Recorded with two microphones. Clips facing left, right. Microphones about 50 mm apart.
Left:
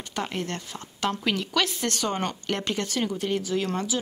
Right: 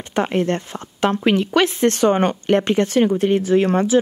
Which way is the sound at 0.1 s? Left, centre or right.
Right.